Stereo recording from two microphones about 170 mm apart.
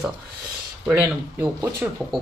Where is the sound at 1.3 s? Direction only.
10° right (ahead or behind).